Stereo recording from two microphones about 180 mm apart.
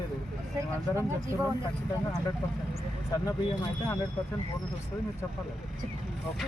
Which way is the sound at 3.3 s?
20° left (ahead or behind).